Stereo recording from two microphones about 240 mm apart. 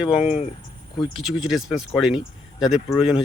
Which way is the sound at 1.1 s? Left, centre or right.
Centre.